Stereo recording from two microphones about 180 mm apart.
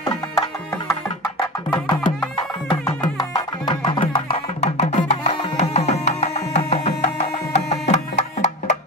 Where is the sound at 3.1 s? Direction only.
25° left (ahead or behind); by 6.9 s 40° left (ahead or behind).